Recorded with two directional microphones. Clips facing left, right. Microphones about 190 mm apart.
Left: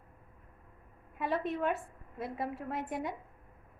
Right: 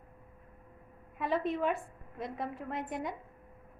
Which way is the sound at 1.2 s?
Centre (ahead or behind).